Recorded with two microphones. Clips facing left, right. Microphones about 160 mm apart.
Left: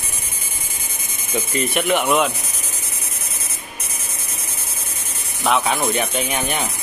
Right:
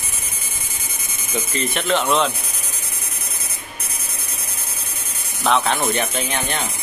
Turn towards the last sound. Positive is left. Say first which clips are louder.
# left 2 dB
turn(degrees=10)  # may be behind; listen again after turning